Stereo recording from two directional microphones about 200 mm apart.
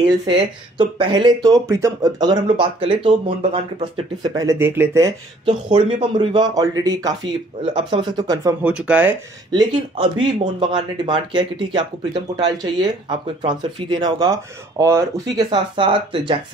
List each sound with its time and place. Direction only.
0.3 s speech: 25° right (ahead or behind)
8.6 s speech: 5° right (ahead or behind)
9.5 s speech: 25° right (ahead or behind)